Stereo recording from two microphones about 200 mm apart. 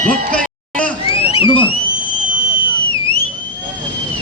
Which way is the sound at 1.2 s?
25° left (ahead or behind).